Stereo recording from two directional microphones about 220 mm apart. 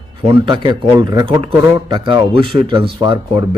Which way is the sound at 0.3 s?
20° right (ahead or behind).